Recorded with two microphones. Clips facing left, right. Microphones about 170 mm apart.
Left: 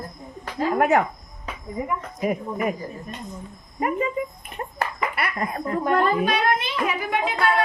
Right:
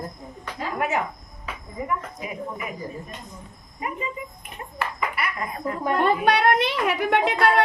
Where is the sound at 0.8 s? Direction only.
55° left (ahead or behind).